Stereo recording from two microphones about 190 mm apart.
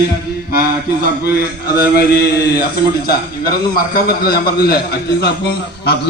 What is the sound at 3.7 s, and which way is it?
A man's voice, 50° left (ahead or behind).